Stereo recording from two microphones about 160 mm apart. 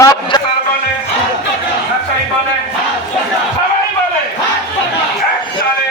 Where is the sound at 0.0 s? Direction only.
25° left (ahead or behind).